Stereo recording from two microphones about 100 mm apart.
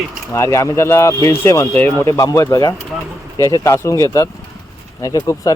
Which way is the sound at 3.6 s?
30° left (ahead or behind).